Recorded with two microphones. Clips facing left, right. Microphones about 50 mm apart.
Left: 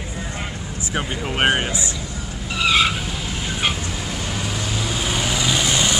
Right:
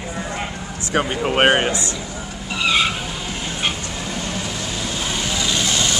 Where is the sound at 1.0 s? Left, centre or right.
Right.